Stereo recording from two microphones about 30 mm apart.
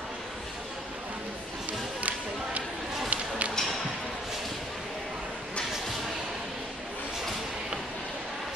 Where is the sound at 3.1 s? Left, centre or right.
Right.